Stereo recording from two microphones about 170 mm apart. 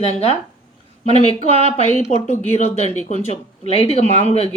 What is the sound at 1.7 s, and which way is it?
Speech, 45° left (ahead or behind).